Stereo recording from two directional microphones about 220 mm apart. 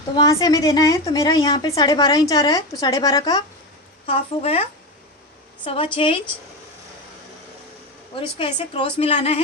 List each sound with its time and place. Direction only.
0.2 s a woman's voice: 15° left (ahead or behind)
8.1 s a woman's voice: 25° left (ahead or behind)